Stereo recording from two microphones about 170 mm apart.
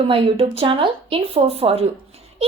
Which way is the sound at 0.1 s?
35° right (ahead or behind).